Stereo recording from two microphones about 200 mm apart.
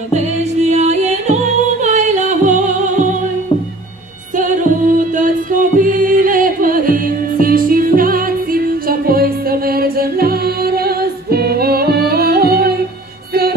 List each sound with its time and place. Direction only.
0.6 s music: 35° right (ahead or behind)
4.4 s music: 40° right (ahead or behind)